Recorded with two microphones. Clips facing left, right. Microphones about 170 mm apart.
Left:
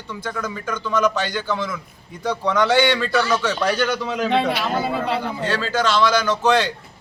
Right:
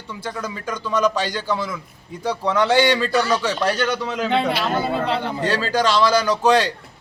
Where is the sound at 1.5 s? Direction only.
10° right (ahead or behind).